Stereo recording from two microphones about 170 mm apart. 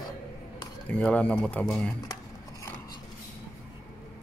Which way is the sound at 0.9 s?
5° left (ahead or behind).